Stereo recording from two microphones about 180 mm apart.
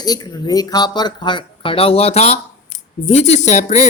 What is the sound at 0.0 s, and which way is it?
Speech, 20° left (ahead or behind).